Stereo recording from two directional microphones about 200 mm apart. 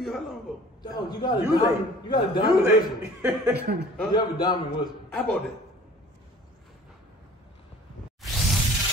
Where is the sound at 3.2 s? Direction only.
15° right (ahead or behind).